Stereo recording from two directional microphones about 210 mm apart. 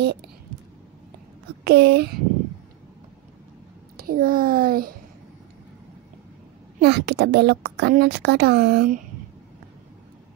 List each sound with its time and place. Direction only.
0.0 s a child's voice: 50° right (ahead or behind)
1.6 s speech: 50° right (ahead or behind)
3.9 s a child's voice: 45° right (ahead or behind)
6.8 s a child's voice: 50° right (ahead or behind)